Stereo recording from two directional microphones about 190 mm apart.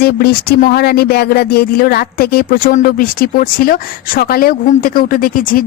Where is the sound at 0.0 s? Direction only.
55° left (ahead or behind).